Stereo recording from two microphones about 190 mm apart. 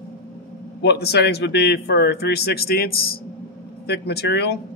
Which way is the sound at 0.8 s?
60° left (ahead or behind).